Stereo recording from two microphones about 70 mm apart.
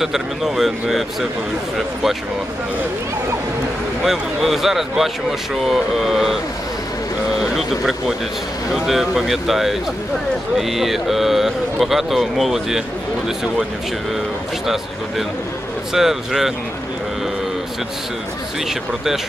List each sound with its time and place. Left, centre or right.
0.0 s speech: centre
4.0 s speech: centre
8.7 s speech: centre
15.9 s speech: centre